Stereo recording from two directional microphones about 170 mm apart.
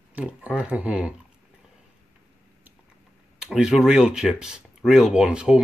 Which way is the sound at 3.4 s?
5° right (ahead or behind).